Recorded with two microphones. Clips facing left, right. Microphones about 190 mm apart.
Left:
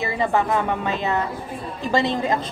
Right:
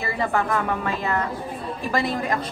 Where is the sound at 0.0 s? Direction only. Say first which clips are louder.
Left 3 dB; 20° left (ahead or behind).